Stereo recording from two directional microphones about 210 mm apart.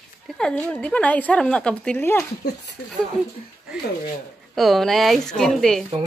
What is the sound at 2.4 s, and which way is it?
Speech, 50° left (ahead or behind).